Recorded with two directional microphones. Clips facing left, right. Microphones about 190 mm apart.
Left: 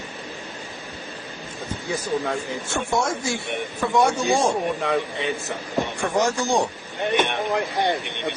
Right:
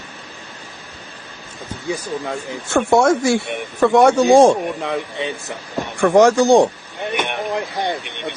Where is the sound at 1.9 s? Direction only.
15° right (ahead or behind).